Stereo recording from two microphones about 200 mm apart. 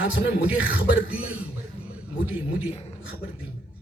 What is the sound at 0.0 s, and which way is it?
A man's voice, 10° right (ahead or behind).